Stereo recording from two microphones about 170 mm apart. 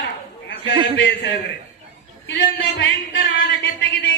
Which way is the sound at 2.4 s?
80° left.